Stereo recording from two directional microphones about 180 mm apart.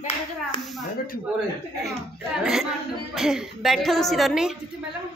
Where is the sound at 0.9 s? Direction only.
55° left (ahead or behind).